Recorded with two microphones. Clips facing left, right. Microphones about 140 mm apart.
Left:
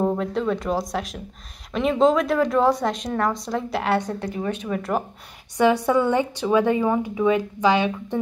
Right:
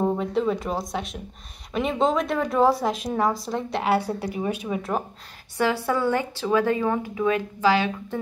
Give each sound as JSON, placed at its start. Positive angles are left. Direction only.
{"t": 0.0, "sound": "a woman's voice", "side_deg": 0}
{"t": 5.6, "sound": "a woman's voice", "side_deg": 20}